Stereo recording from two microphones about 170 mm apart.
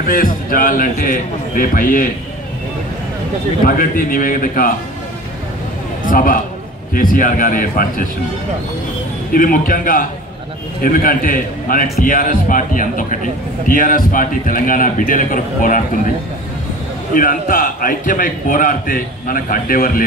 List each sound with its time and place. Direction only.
0.0 s a man's voice: 55° left (ahead or behind)
3.6 s a man's voice: 55° left (ahead or behind)
6.0 s a man's voice: 55° left (ahead or behind)
9.3 s a man's voice: 55° left (ahead or behind)
17.1 s a man's voice: 55° left (ahead or behind)